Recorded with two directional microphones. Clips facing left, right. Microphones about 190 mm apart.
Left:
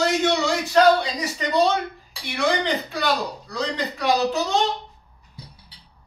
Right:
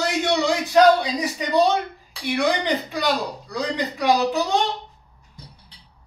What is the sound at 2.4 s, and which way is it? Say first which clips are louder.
Speech: left 1 dB; 15° right (ahead or behind).